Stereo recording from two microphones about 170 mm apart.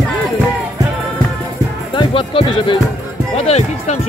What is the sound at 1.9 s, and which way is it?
Music, 30° left (ahead or behind).